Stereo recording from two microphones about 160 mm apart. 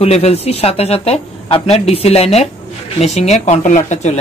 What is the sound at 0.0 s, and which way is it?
Speech, 40° left (ahead or behind).